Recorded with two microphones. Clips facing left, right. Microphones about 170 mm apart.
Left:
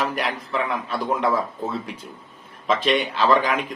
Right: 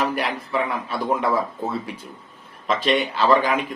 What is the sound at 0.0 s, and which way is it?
A man's voice, 5° right (ahead or behind).